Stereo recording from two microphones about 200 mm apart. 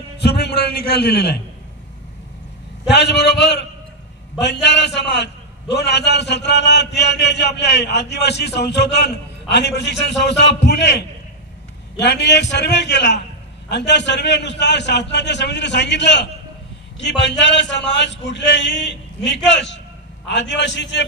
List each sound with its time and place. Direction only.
0.2 s a man's voice: 55° left (ahead or behind)
2.9 s a man's voice: 55° left (ahead or behind)